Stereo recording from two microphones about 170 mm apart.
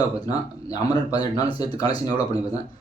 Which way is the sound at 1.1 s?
25° left (ahead or behind).